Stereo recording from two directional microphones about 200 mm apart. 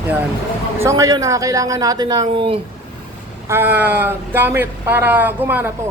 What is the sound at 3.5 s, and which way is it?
Speech, 10° right (ahead or behind).